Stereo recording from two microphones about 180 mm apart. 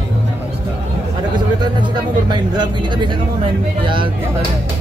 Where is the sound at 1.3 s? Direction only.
25° right (ahead or behind).